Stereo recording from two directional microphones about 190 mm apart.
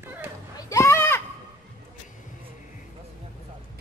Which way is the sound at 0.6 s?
15° left (ahead or behind).